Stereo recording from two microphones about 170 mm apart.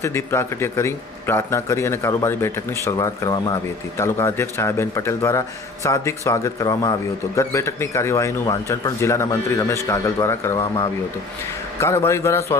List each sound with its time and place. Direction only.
0.0 s a man's voice: 15° left (ahead or behind)